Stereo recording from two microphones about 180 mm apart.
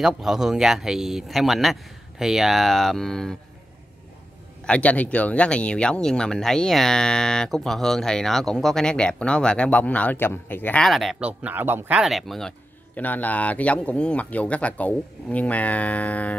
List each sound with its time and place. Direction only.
0.0 s speech: centre (ahead or behind)
4.6 s speech: 5° left (ahead or behind)